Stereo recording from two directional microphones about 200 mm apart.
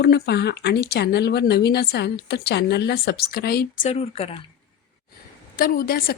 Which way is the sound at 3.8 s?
30° left (ahead or behind).